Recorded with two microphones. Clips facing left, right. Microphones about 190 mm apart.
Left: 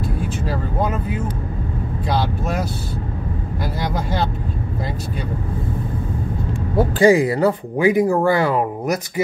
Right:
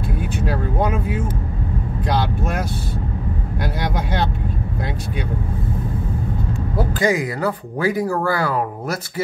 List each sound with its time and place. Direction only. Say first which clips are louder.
0.4 s speech: right 2 dB; centre (ahead or behind)
6.8 s speech: left 6 dB; 30° left (ahead or behind)